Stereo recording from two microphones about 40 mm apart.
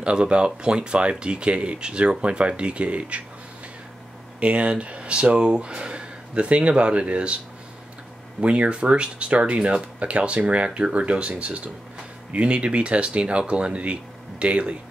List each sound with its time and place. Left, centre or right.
0.0 s speech: right
4.4 s speech: right
8.4 s speech: right